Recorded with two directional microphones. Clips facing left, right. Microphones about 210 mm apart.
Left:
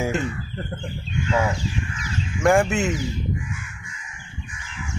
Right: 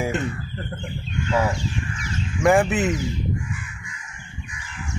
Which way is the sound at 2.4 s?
Centre (ahead or behind).